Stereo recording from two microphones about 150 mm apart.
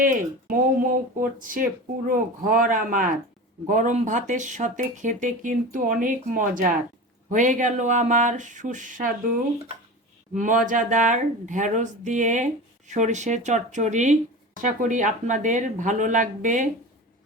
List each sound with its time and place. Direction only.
0.0 s speech: 65° right (ahead or behind)
10.3 s speech: 60° right (ahead or behind)